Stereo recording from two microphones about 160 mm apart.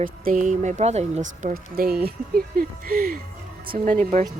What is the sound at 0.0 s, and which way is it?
Speech, 55° right (ahead or behind).